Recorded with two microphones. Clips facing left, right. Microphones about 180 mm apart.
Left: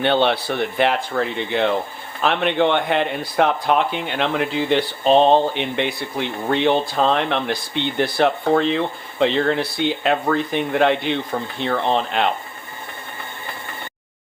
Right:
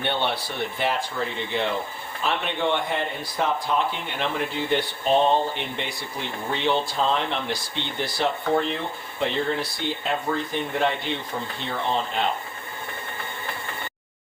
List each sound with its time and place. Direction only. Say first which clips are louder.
0.0 s speech: left 8 dB; 90° left; by 12.3 s 75° left (ahead or behind)